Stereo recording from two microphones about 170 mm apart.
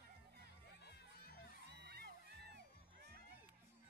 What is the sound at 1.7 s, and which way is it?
Music, 75° right (ahead or behind).